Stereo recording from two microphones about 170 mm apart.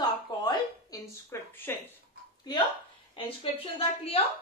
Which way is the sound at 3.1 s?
35° left (ahead or behind).